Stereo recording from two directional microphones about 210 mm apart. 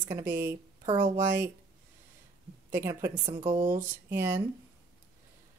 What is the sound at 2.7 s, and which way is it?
A woman's voice, 10° right (ahead or behind).